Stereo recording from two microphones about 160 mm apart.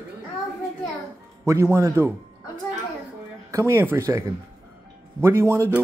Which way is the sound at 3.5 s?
15° right (ahead or behind).